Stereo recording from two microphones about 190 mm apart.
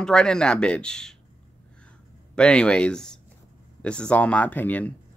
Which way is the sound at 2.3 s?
5° left (ahead or behind).